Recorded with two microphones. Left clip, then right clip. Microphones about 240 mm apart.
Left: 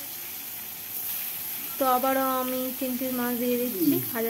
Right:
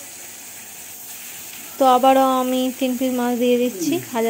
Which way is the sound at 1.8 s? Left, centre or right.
Right.